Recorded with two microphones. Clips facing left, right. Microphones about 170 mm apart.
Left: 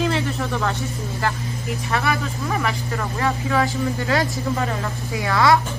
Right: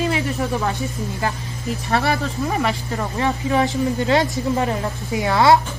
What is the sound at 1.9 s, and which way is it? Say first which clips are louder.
Speech: right 3 dB; 30° right (ahead or behind).